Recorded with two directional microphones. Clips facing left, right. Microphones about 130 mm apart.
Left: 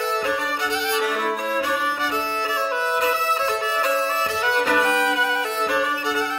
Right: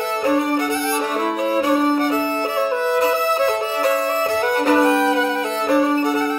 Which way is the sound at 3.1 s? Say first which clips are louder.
Right 5 dB; 40° right (ahead or behind).